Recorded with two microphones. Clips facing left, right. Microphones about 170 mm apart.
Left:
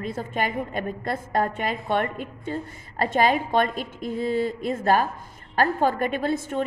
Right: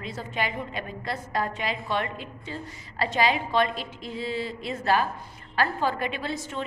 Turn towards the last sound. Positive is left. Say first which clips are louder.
# left 7 dB
turn(degrees=50)  # may be behind; listen again after turning